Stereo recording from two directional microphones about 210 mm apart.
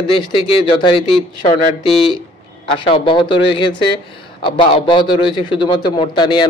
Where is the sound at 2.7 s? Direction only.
25° left (ahead or behind).